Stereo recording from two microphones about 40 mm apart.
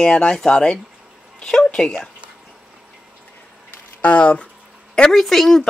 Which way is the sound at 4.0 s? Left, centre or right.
Left.